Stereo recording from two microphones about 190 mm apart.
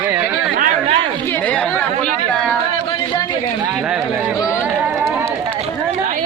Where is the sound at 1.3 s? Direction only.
10° left (ahead or behind).